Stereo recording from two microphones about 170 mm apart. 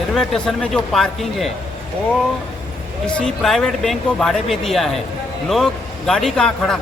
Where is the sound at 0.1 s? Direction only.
5° left (ahead or behind).